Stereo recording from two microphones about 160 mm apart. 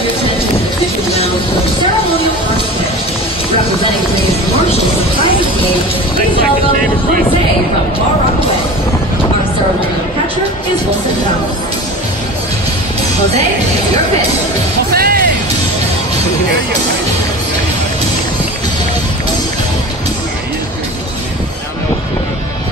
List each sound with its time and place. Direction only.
14.9 s music: 70° right (ahead or behind)